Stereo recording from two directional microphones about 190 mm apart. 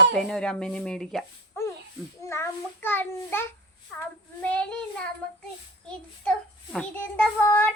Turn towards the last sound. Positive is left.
turn(degrees=10)  # may be behind; listen again after turning